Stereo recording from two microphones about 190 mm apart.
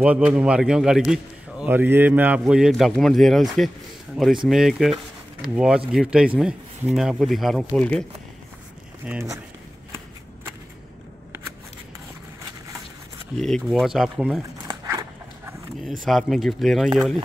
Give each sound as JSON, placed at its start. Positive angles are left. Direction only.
{"t": 0.0, "sound": "a man's voice", "side_deg": -5}
{"t": 9.0, "sound": "speech", "side_deg": -5}
{"t": 13.4, "sound": "a man's voice", "side_deg": 0}
{"t": 14.6, "sound": "dog", "side_deg": -20}
{"t": 16.0, "sound": "a man's voice", "side_deg": 0}